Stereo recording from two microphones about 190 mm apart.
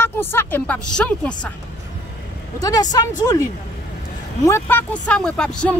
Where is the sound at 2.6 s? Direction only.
20° left (ahead or behind).